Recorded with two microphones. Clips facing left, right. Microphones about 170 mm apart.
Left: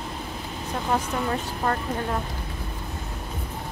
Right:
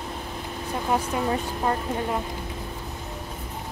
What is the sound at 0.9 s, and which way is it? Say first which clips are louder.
Speech: right 1 dB; 10° right (ahead or behind).